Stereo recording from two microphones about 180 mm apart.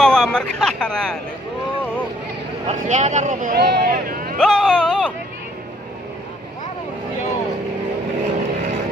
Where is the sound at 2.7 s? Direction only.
40° right (ahead or behind).